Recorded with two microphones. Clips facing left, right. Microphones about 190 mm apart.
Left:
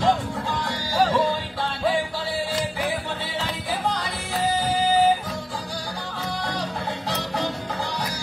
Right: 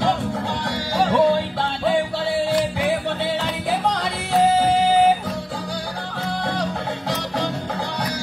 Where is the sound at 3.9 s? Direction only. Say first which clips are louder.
Right 5 dB; 65° right (ahead or behind).